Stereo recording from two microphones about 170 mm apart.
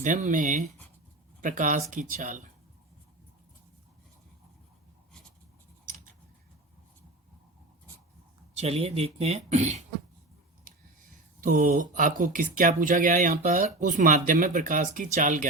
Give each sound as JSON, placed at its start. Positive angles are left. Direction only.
{"t": 0.0, "sound": "speech", "side_deg": -45}
{"t": 8.5, "sound": "speech", "side_deg": -35}
{"t": 11.3, "sound": "speech", "side_deg": -50}